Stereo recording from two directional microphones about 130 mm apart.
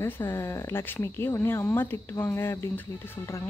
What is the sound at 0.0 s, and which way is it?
Speech, 20° left (ahead or behind).